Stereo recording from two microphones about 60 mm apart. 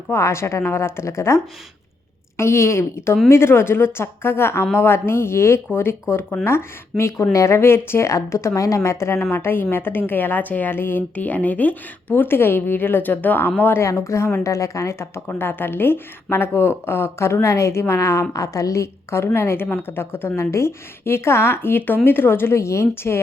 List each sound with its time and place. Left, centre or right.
0.1 s a woman's voice: left
2.4 s a woman's voice: left
11.1 s speech: left
12.1 s a woman's voice: left
13.8 s a woman's voice: left